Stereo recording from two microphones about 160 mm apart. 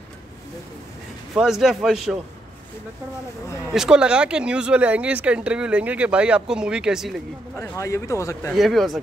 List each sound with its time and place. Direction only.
1.3 s speech: centre (ahead or behind)
3.7 s speech: 5° right (ahead or behind)
7.6 s speech: 20° left (ahead or behind)
8.5 s speech: centre (ahead or behind)